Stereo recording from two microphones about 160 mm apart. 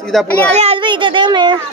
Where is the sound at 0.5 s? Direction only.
35° right (ahead or behind).